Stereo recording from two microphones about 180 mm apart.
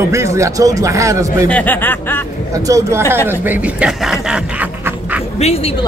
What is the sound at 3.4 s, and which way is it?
Speech, 10° right (ahead or behind).